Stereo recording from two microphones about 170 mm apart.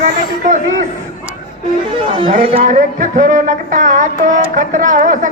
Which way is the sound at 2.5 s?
50° right (ahead or behind).